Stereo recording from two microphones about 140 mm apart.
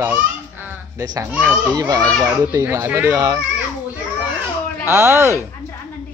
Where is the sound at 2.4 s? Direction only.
15° right (ahead or behind).